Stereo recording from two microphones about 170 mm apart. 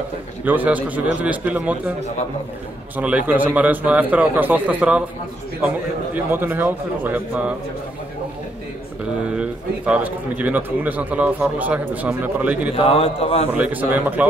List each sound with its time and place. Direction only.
0.5 s a man's voice: 10° right (ahead or behind)
3.0 s a man's voice: 10° right (ahead or behind)
6.1 s a man's voice: 10° right (ahead or behind)
9.2 s a man's voice: 5° right (ahead or behind)
12.7 s a man's voice: 35° left (ahead or behind)
13.5 s a man's voice: 10° right (ahead or behind)